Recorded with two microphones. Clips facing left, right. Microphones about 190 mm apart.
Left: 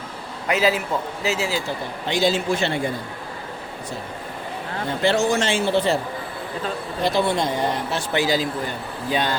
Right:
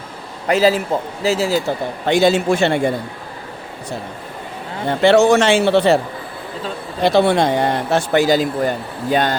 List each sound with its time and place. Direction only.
0.4 s speech: 35° right (ahead or behind)
2.0 s a man's voice: 60° right (ahead or behind)
4.9 s a man's voice: 75° right (ahead or behind)
7.0 s a man's voice: 70° right (ahead or behind)
8.1 s speech: 45° right (ahead or behind)